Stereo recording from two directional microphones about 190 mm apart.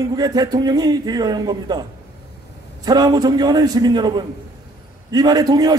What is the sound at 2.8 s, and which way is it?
A man's voice, 20° right (ahead or behind).